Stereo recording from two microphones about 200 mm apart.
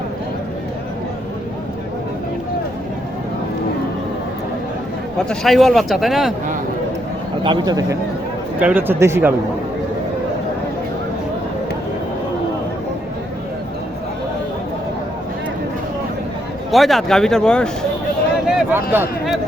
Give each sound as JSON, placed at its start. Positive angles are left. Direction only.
{"t": 5.3, "sound": "speech", "side_deg": 0}
{"t": 7.4, "sound": "a man's voice", "side_deg": -20}
{"t": 16.7, "sound": "speech", "side_deg": 0}
{"t": 18.4, "sound": "speech", "side_deg": -5}